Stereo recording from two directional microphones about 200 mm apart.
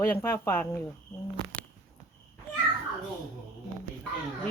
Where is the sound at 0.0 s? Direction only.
10° left (ahead or behind).